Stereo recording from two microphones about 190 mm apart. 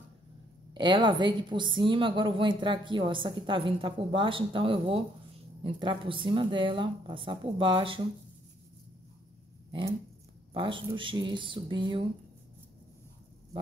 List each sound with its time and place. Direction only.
0.7 s a woman's voice: 25° right (ahead or behind)
9.7 s a woman's voice: 25° right (ahead or behind)